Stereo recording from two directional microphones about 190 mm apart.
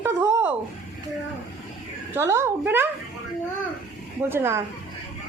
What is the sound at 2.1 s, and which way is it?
Speech, 15° right (ahead or behind).